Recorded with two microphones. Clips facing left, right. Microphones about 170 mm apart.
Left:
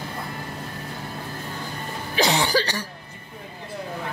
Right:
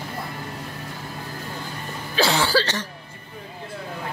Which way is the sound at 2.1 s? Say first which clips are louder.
Right 1 dB; 20° left (ahead or behind).